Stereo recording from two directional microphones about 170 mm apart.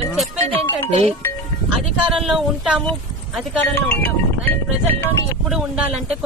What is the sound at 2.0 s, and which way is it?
Speech, 5° right (ahead or behind).